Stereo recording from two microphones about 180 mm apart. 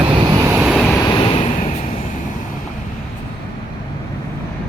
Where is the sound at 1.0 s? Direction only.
25° left (ahead or behind).